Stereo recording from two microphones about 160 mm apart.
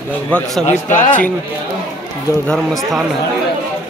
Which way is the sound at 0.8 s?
50° left (ahead or behind).